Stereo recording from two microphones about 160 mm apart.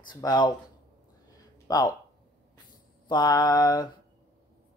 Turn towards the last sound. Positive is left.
turn(degrees=25)  # may be behind; listen again after turning